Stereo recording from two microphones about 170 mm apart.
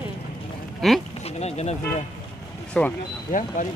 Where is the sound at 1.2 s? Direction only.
40° left (ahead or behind).